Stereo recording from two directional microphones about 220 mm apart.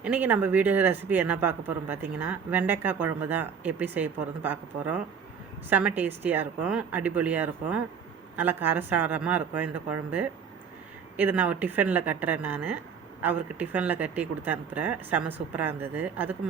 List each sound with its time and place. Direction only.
0.0 s speech: 10° right (ahead or behind)